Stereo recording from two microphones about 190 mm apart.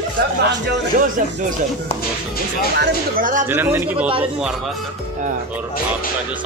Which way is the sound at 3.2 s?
40° right (ahead or behind).